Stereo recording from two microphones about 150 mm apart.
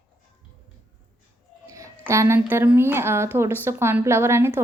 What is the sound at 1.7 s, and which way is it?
A woman's voice, 20° right (ahead or behind).